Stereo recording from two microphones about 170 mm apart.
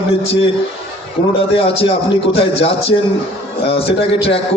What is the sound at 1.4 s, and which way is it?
A man's voice, 35° left (ahead or behind).